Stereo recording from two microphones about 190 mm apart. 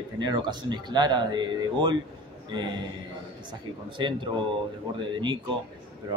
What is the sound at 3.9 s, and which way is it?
Speech, 25° right (ahead or behind).